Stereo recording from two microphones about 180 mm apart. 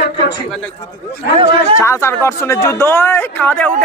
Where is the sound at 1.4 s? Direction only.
30° right (ahead or behind).